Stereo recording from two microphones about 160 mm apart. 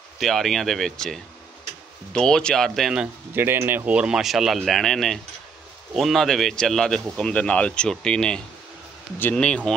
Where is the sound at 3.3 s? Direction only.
15° right (ahead or behind).